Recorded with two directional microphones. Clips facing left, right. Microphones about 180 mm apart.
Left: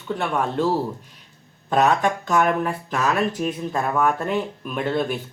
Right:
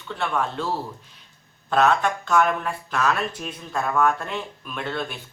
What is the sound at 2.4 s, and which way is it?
Speech, 45° left (ahead or behind).